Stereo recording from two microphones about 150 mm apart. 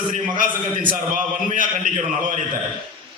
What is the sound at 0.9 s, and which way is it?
A man's voice, 65° right (ahead or behind).